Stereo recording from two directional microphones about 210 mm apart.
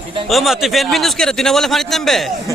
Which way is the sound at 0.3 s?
Centre (ahead or behind).